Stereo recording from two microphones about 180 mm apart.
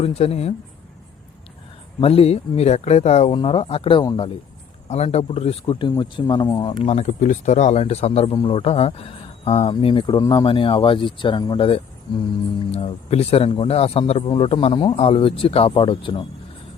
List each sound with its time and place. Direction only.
0.0 s speech: 35° left (ahead or behind)
2.0 s speech: 30° left (ahead or behind)